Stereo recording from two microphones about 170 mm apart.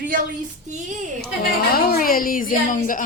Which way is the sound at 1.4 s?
60° left (ahead or behind).